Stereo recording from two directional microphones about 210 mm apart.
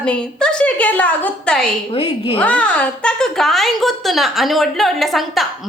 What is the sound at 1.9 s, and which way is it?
Speech, 25° left (ahead or behind).